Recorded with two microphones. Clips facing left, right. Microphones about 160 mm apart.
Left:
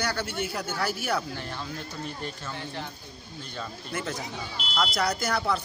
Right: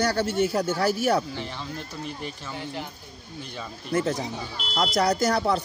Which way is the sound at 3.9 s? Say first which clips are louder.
Right 9 dB; 35° right (ahead or behind).